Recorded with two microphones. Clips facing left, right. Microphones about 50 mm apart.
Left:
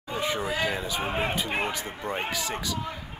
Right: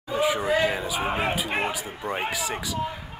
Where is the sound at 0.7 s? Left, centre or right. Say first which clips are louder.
Right 3 dB; centre.